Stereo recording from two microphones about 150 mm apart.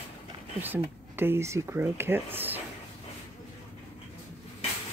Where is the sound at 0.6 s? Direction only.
15° right (ahead or behind).